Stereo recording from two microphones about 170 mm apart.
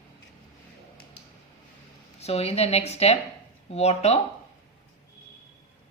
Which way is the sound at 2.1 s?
35° left (ahead or behind).